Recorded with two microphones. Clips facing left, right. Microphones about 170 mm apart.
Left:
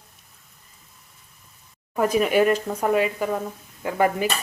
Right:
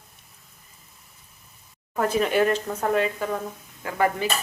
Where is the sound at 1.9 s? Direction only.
10° left (ahead or behind).